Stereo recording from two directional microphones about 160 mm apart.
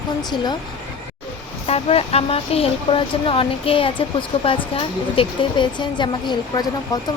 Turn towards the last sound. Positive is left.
turn(degrees=25)  # may be behind; listen again after turning